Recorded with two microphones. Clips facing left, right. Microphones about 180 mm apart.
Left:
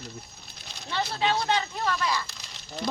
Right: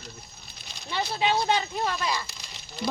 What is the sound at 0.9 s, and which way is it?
Speech, 10° right (ahead or behind).